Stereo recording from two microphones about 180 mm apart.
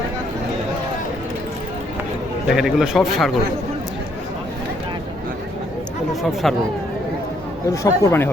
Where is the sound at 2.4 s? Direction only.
Centre (ahead or behind).